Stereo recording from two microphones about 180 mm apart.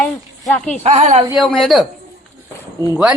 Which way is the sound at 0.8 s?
40° right (ahead or behind).